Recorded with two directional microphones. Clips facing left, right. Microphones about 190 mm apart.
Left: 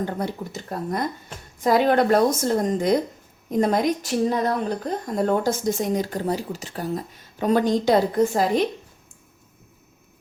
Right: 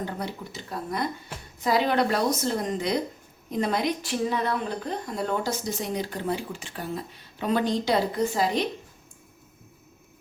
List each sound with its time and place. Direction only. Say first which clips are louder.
0.0 s a woman's voice: left 5 dB; 50° left (ahead or behind)